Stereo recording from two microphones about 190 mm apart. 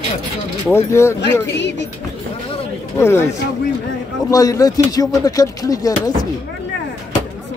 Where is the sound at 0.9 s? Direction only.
15° left (ahead or behind).